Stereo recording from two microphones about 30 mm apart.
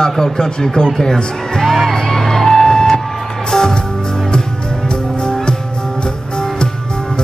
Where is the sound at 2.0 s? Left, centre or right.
Centre.